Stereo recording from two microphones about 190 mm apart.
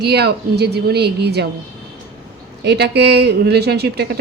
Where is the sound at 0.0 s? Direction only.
60° right (ahead or behind).